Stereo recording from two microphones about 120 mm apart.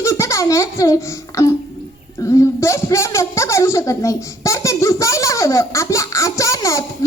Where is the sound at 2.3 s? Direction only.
25° left (ahead or behind).